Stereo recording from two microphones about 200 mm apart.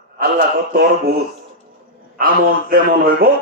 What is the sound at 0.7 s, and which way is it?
Speech, 50° right (ahead or behind).